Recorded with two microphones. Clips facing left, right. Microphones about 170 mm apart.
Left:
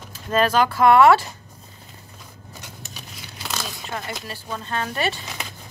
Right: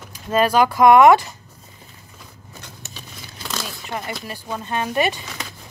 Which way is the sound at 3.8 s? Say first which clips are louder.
Right 4 dB; 10° right (ahead or behind).